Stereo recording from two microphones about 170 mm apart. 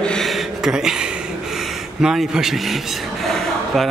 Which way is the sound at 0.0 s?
5° left (ahead or behind).